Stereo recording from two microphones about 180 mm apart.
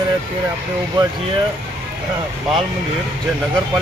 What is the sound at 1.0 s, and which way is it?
Speech, 25° right (ahead or behind).